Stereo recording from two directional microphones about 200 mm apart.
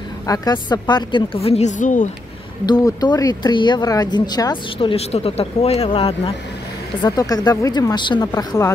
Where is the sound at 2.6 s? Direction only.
20° left (ahead or behind).